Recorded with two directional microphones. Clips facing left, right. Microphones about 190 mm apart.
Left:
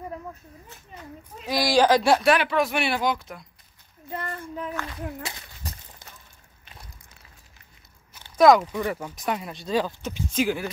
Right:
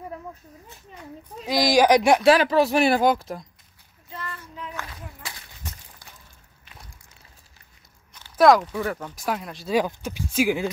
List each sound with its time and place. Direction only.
1.5 s speech: 15° right (ahead or behind)
2.3 s speech: 35° right (ahead or behind)
4.1 s speech: 55° left (ahead or behind)
8.4 s speech: centre (ahead or behind)
9.8 s speech: 10° right (ahead or behind)